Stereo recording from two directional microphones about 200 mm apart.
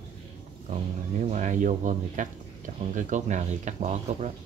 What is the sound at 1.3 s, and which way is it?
Speech, 40° right (ahead or behind).